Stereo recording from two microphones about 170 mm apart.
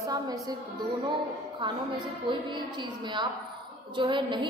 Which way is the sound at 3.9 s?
30° right (ahead or behind).